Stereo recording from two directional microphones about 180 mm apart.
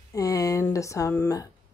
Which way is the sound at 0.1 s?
20° left (ahead or behind).